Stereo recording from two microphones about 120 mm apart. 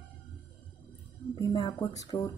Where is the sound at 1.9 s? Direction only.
25° left (ahead or behind).